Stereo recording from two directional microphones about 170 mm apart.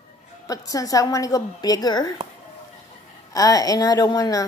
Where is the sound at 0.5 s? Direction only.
20° left (ahead or behind).